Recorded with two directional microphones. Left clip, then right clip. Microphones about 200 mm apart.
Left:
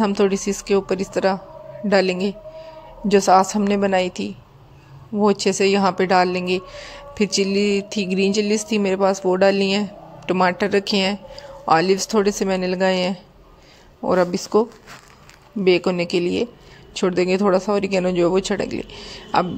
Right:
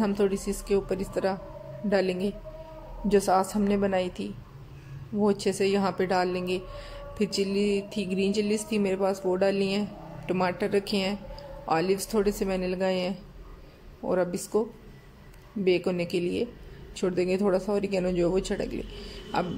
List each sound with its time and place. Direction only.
0.0 s speech: 10° left (ahead or behind)